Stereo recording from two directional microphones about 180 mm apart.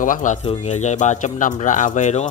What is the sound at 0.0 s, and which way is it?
Speech, 45° left (ahead or behind).